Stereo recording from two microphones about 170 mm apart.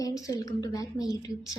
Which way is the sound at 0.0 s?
20° left (ahead or behind).